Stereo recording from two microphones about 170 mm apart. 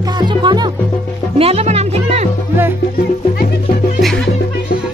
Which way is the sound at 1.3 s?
35° right (ahead or behind).